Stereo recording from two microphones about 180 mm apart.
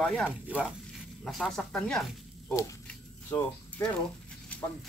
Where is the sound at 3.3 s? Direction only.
15° left (ahead or behind).